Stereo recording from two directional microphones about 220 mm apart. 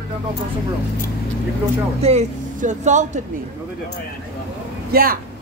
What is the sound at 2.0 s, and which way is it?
Speech, 30° right (ahead or behind).